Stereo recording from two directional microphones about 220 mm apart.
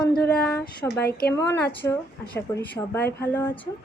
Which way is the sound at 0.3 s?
5° left (ahead or behind).